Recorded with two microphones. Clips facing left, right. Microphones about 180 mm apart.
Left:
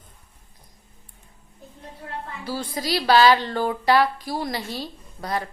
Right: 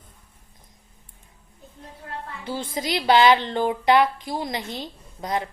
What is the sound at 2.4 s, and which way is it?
A woman's voice, 25° right (ahead or behind).